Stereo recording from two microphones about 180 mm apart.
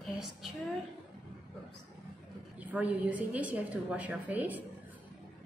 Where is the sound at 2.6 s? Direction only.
10° right (ahead or behind).